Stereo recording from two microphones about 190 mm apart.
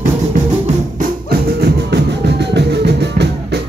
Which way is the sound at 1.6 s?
60° right (ahead or behind).